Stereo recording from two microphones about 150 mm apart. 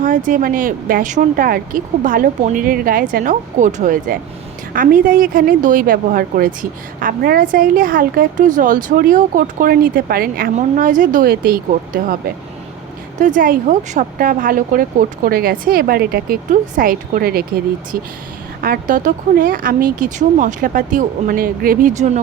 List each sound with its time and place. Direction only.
0.0 s a woman's voice: 60° right (ahead or behind); by 10.5 s 85° right
10.5 s speech: 60° right (ahead or behind)
13.1 s a woman's voice: 60° right (ahead or behind); by 17.6 s 90° right
17.9 s a woman's voice: 75° right (ahead or behind); by 22.2 s 50° right (ahead or behind)